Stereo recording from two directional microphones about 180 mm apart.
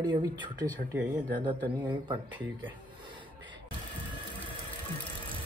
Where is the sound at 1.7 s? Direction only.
25° right (ahead or behind).